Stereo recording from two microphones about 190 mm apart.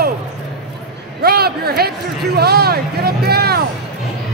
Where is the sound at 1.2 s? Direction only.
55° right (ahead or behind).